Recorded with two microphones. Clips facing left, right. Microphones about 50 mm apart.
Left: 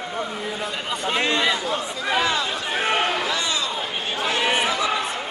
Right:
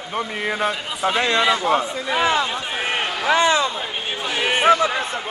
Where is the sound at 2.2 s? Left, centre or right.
Right.